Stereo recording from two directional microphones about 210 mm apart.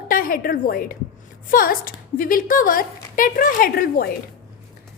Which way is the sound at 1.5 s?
45° left (ahead or behind).